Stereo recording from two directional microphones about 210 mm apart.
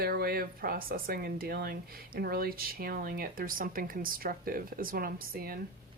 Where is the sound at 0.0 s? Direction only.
45° right (ahead or behind).